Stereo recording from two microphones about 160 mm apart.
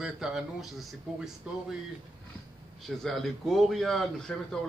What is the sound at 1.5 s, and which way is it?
Speech, 5° right (ahead or behind).